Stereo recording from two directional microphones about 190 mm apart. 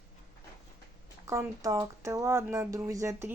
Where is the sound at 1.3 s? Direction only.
15° right (ahead or behind).